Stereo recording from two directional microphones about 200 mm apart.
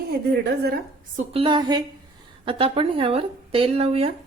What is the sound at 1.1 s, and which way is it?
Speech, 25° right (ahead or behind).